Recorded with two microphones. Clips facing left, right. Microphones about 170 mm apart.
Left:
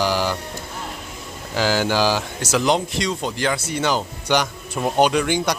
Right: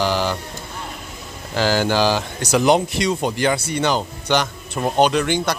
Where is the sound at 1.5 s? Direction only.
5° left (ahead or behind).